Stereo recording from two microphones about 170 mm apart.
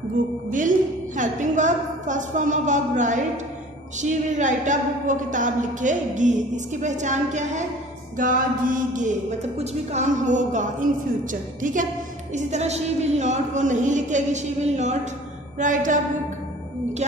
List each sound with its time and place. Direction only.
0.5 s a woman's voice: 50° right (ahead or behind)